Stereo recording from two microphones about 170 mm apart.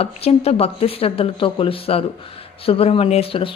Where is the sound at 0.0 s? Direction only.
35° left (ahead or behind).